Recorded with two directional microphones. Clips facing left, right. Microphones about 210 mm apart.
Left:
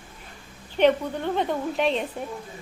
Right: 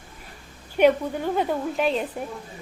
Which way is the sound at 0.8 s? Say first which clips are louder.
Right 1 dB; 10° right (ahead or behind).